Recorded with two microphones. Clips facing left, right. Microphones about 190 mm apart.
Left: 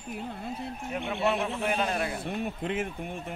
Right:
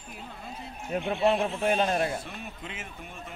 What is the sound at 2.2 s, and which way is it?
Speech, 55° left (ahead or behind).